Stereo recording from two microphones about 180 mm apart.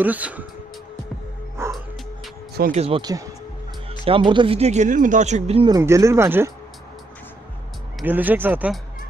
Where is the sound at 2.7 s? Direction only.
35° right (ahead or behind).